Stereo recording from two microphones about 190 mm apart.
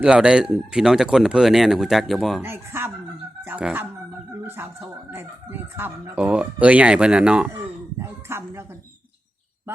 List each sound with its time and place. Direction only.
0.0 s speech: 5° right (ahead or behind)
2.4 s speech: 10° right (ahead or behind)